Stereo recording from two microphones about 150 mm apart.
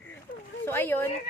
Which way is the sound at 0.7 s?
15° left (ahead or behind).